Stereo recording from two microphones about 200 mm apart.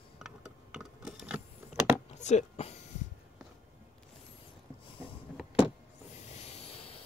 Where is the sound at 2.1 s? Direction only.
35° left (ahead or behind).